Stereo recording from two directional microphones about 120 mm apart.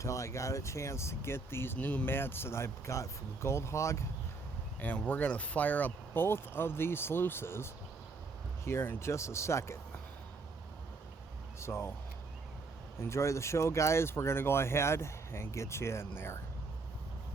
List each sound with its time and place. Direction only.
0.0 s speech: 25° left (ahead or behind)
4.8 s speech: 15° left (ahead or behind)
11.6 s speech: 20° left (ahead or behind)
13.0 s speech: 25° left (ahead or behind)